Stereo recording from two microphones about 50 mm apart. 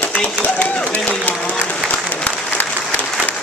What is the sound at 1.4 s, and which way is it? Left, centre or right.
Applause, left.